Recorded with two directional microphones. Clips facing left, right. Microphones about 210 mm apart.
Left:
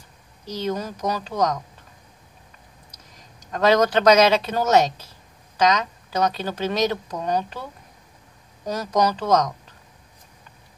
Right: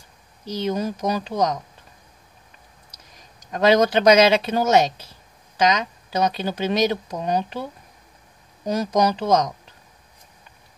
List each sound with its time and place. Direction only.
0.7 s speech: 15° right (ahead or behind)
3.5 s speech: 15° right (ahead or behind)
8.6 s speech: 15° right (ahead or behind)